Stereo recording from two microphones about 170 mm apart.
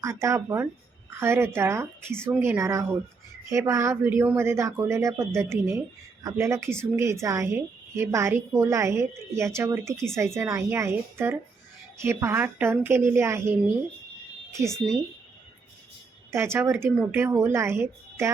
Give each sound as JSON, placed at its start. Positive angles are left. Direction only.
{"t": 0.0, "sound": "a woman's voice", "side_deg": -15}
{"t": 16.3, "sound": "a woman's voice", "side_deg": -15}